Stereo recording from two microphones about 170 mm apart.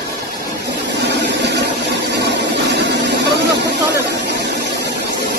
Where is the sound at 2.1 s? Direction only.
90° right.